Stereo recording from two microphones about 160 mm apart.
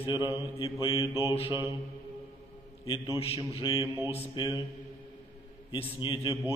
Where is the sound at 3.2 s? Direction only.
35° left (ahead or behind).